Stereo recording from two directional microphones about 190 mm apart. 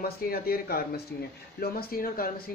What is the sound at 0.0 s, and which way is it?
Speech, 50° left (ahead or behind).